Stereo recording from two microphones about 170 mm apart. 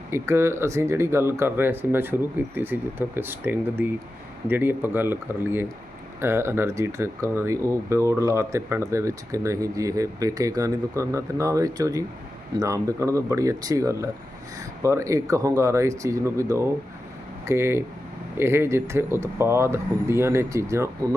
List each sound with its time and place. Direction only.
0.1 s speech: 15° right (ahead or behind)